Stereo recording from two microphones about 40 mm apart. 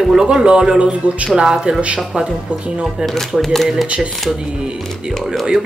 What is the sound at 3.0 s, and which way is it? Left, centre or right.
Speech, centre.